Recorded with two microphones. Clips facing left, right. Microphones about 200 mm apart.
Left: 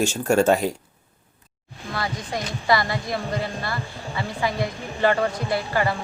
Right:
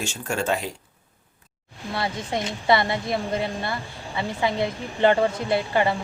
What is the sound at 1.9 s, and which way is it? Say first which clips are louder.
Speech: right 1 dB; 25° right (ahead or behind).